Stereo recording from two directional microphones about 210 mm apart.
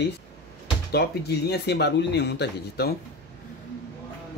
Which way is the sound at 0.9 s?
50° left (ahead or behind).